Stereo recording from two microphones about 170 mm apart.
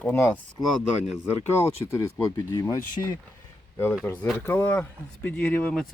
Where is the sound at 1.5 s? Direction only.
15° left (ahead or behind).